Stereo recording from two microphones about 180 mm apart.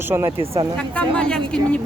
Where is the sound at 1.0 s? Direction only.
5° left (ahead or behind).